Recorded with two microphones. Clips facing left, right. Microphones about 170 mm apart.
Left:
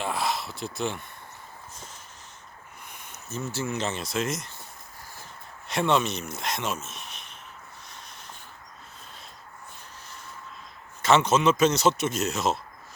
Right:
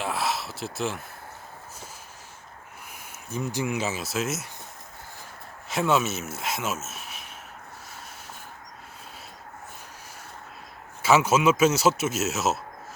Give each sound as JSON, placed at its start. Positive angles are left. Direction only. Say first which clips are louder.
{"t": 0.0, "sound": "a sound", "louder": "even", "side_deg": 0}
{"t": 3.2, "sound": "speech", "louder": "right 3 dB", "side_deg": -15}
{"t": 5.6, "sound": "speech", "louder": "even", "side_deg": -5}
{"t": 11.0, "sound": "speech", "louder": "right 1 dB", "side_deg": -5}